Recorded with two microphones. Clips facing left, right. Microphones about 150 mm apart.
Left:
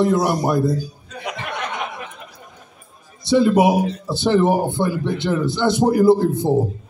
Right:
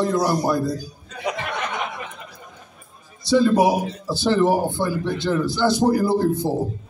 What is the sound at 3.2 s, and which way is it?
Speech, 20° left (ahead or behind).